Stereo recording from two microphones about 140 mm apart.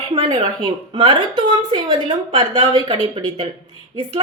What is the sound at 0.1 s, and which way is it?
Speech, 45° right (ahead or behind).